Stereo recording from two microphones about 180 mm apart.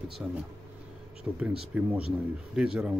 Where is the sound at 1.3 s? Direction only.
5° right (ahead or behind).